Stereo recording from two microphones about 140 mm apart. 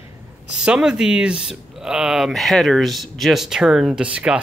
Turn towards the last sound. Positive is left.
turn(degrees=-10)  # may be behind; listen again after turning